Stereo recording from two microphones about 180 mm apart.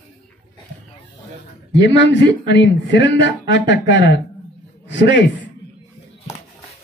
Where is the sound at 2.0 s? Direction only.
90° left.